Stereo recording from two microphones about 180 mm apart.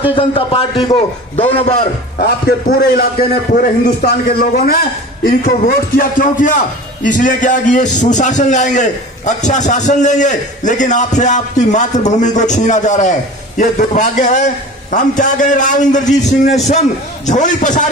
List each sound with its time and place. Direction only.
0.1 s a man's voice: 30° left (ahead or behind)
2.1 s a man's voice: 60° left (ahead or behind); by 17.8 s 45° left (ahead or behind)